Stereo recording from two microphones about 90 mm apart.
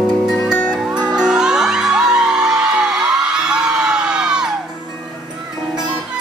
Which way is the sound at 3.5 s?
10° right (ahead or behind).